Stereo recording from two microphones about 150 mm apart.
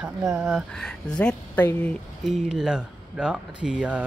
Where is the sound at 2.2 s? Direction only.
Centre (ahead or behind).